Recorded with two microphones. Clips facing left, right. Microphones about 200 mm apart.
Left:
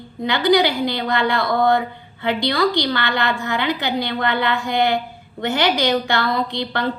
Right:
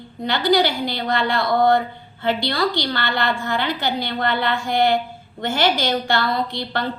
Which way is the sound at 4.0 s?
55° left (ahead or behind).